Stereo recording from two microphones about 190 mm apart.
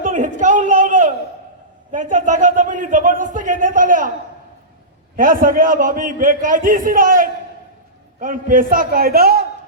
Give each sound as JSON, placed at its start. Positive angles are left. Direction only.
{"t": 0.0, "sound": "a sound", "side_deg": -40}
{"t": 1.9, "sound": "a man's voice", "side_deg": -40}
{"t": 5.1, "sound": "a man's voice", "side_deg": -50}